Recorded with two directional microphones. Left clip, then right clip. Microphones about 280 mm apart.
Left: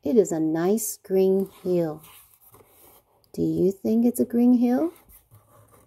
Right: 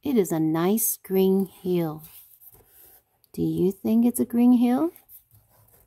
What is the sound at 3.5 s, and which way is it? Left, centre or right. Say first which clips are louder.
Speech: left 1 dB; centre.